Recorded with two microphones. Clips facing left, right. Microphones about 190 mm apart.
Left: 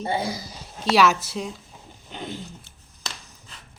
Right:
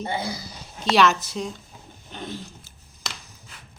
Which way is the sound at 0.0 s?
30° left (ahead or behind).